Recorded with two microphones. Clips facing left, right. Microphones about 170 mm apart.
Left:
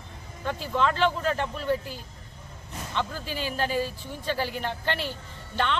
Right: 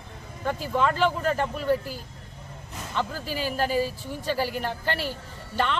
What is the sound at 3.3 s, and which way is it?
Speech, 40° right (ahead or behind).